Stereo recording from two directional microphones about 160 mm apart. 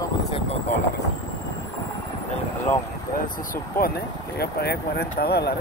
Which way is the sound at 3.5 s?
70° left (ahead or behind).